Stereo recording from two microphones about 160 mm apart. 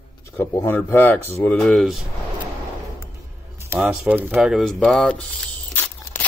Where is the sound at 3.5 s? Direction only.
15° right (ahead or behind).